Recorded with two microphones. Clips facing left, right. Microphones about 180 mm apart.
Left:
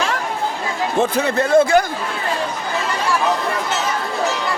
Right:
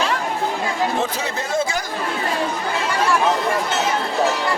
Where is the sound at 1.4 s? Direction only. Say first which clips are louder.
Left 10 dB; 60° left (ahead or behind).